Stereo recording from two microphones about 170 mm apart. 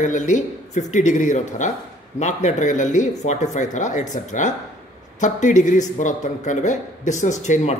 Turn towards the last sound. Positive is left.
turn(degrees=40)  # may be behind; listen again after turning